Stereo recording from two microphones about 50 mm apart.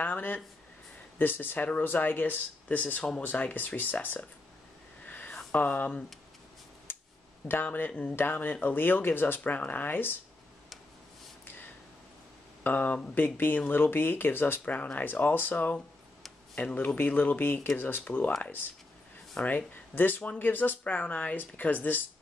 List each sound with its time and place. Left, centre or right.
0.0 s speech: left
5.0 s a sound: left
5.5 s speech: left
6.9 s a sound: left
7.6 s speech: left
9.4 s speech: left
11.4 s a sound: left
12.6 s speech: left
14.6 s speech: left
15.0 s speech: left
20.8 s speech: left